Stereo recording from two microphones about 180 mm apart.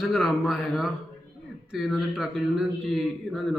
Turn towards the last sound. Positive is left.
turn(degrees=0)  # may be behind; listen again after turning